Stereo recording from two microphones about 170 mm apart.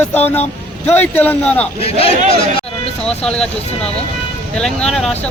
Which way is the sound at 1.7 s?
35° left (ahead or behind).